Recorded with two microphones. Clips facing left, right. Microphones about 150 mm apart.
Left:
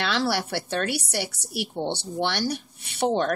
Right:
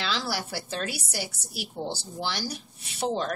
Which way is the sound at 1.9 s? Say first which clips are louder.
Left 6 dB; 65° left (ahead or behind).